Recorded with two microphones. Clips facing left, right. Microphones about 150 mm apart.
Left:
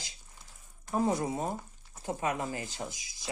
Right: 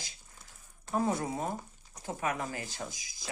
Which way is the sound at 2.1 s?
25° left (ahead or behind).